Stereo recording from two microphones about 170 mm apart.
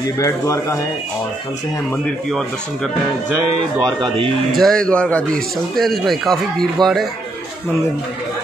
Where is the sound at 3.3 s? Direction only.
25° right (ahead or behind).